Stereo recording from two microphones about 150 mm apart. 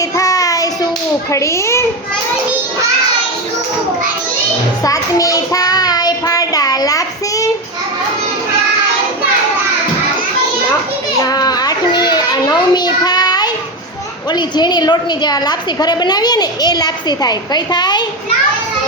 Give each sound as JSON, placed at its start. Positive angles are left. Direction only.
{"t": 0.2, "sound": "child singing", "side_deg": 25}
{"t": 1.3, "sound": "a woman's voice", "side_deg": 20}
{"t": 4.8, "sound": "child singing", "side_deg": 25}
{"t": 11.2, "sound": "a sound", "side_deg": 25}
{"t": 14.3, "sound": "a woman's voice", "side_deg": 30}